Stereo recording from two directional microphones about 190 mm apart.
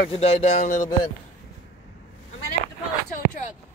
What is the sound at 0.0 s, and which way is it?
Speech, 30° left (ahead or behind).